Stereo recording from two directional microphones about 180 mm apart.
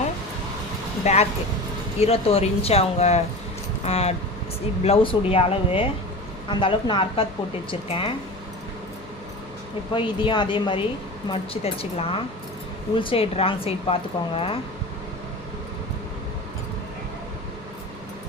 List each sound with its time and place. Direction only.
1.0 s a woman's voice: 35° left (ahead or behind)
9.9 s a woman's voice: 25° left (ahead or behind)